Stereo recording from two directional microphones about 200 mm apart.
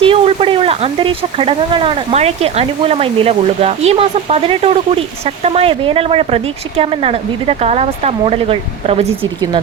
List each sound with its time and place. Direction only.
0.0 s speech: 30° right (ahead or behind)